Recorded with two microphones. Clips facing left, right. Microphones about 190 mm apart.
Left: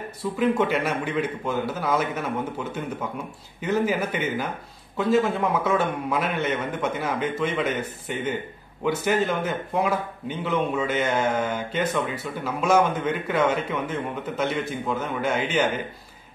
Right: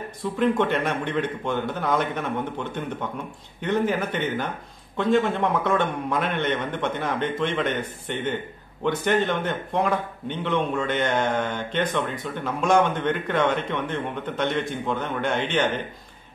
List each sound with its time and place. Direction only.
0.2 s a man's voice: 5° left (ahead or behind)